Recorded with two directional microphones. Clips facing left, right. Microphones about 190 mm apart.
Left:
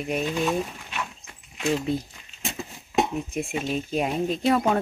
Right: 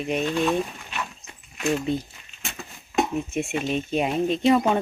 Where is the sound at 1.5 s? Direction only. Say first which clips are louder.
Right 1 dB; 25° left (ahead or behind).